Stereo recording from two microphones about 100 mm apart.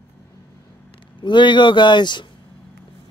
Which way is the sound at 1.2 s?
50° left (ahead or behind).